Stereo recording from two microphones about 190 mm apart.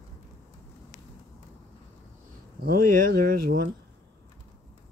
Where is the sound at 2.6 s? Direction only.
50° right (ahead or behind).